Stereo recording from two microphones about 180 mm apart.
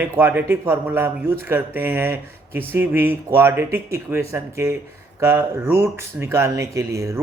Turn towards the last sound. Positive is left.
turn(degrees=-15)  # may be behind; listen again after turning